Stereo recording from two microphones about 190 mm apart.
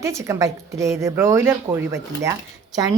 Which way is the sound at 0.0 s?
15° right (ahead or behind).